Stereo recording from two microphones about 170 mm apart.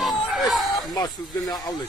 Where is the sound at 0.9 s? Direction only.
25° left (ahead or behind).